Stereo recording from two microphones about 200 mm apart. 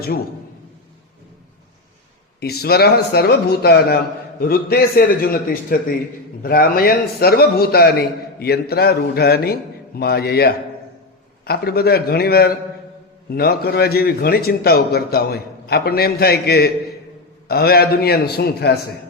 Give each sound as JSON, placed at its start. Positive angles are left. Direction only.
{"t": 2.4, "sound": "a man's voice", "side_deg": 50}